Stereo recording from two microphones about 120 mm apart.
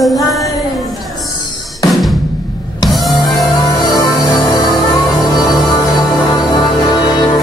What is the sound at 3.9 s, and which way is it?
Music, 35° left (ahead or behind).